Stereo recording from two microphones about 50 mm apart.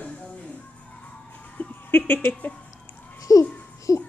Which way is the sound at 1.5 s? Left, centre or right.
Left.